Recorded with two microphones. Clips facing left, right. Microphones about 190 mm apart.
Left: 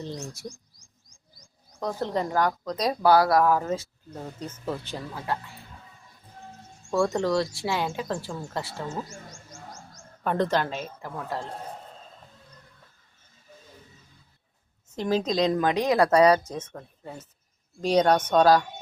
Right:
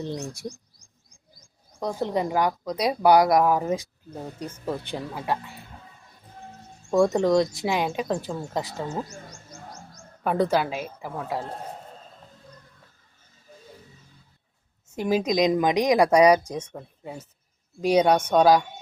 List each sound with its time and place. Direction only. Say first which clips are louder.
0.0 s speech: right 4 dB; 15° right (ahead or behind)
1.8 s speech: right 2 dB; 15° right (ahead or behind)
6.9 s speech: right 4 dB; 20° right (ahead or behind)
10.2 s speech: right 2 dB; 10° right (ahead or behind)
14.9 s speech: right 2 dB; 10° right (ahead or behind)